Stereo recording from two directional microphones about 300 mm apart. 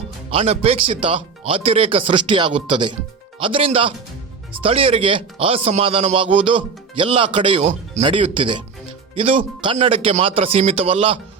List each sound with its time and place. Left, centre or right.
0.3 s speech: centre